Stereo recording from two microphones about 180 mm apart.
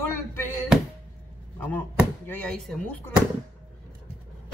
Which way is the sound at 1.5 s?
10° left (ahead or behind).